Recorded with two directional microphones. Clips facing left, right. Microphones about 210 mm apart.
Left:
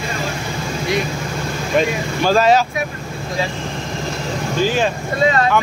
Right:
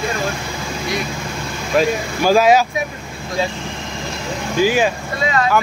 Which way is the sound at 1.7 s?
10° right (ahead or behind).